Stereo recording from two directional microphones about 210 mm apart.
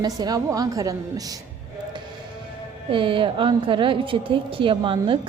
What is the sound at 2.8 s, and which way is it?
A woman's voice, 25° right (ahead or behind).